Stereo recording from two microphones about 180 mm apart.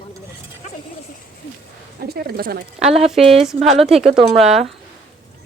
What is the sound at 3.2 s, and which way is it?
Speech, 35° right (ahead or behind).